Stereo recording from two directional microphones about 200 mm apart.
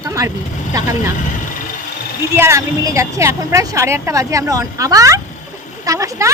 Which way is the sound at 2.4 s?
15° right (ahead or behind).